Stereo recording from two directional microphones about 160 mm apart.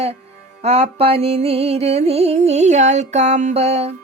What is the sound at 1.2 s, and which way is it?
Music, 40° right (ahead or behind).